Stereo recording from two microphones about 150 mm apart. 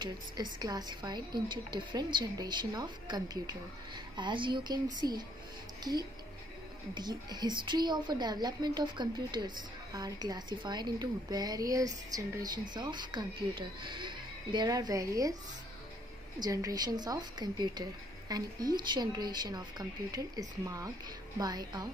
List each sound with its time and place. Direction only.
0.0 s a woman's voice: 30° right (ahead or behind)
6.9 s a woman's voice: 30° right (ahead or behind)
16.3 s a woman's voice: 25° right (ahead or behind)